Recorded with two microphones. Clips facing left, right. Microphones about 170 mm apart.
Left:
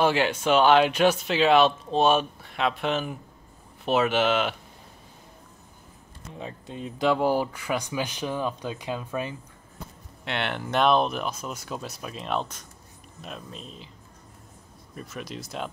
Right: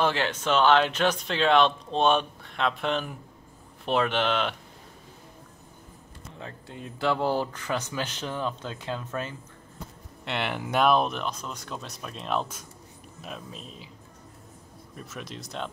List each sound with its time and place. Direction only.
0.0 s speech: 10° left (ahead or behind)
6.3 s speech: 15° left (ahead or behind)
10.2 s speech: centre (ahead or behind)
15.0 s speech: centre (ahead or behind)